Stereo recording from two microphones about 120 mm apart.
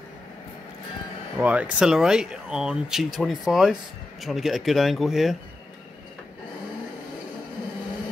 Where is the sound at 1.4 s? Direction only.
10° right (ahead or behind).